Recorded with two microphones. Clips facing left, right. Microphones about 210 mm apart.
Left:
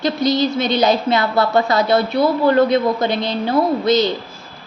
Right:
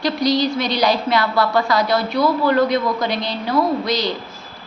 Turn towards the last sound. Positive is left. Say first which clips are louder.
# left 4 dB
turn(degrees=25)  # may be behind; listen again after turning